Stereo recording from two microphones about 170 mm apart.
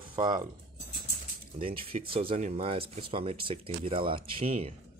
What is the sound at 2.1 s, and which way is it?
Speech, 35° right (ahead or behind).